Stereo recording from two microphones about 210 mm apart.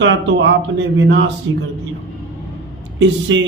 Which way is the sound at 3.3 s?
65° right (ahead or behind).